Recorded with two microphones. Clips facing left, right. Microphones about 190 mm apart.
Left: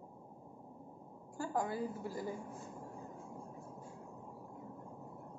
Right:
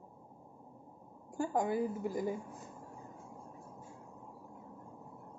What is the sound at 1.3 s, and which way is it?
Speech, 20° right (ahead or behind).